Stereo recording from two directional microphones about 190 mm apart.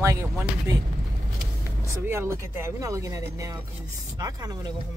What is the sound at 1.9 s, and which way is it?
Speech, 15° right (ahead or behind).